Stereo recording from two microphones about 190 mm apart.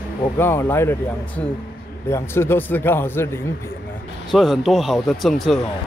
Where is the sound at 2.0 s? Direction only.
15° left (ahead or behind).